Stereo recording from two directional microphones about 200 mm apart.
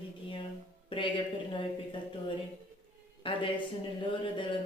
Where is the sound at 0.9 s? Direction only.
25° left (ahead or behind).